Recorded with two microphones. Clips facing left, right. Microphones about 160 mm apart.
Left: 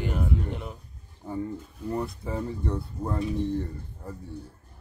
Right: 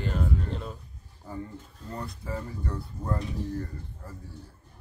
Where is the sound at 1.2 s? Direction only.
25° left (ahead or behind).